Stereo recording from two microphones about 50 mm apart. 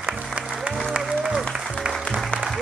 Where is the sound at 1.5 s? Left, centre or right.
Centre.